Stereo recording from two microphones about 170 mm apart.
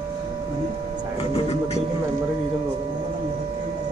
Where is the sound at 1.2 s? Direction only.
35° left (ahead or behind).